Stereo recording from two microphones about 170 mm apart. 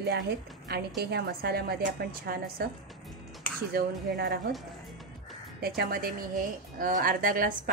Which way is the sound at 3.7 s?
70° right (ahead or behind).